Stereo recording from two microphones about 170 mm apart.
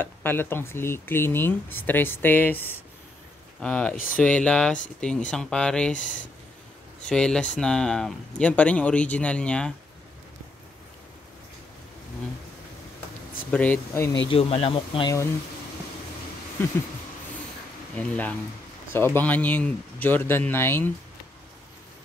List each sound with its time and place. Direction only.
0.0 s speech: 10° left (ahead or behind)
3.9 s speech: 55° left (ahead or behind)
4.2 s speech: 5° left (ahead or behind)
5.9 s speech: 50° left (ahead or behind)
7.1 s speech: 5° left (ahead or behind)
13.5 s speech: 10° left (ahead or behind)
14.3 s speech: 35° left (ahead or behind)
17.9 s speech: 10° left (ahead or behind)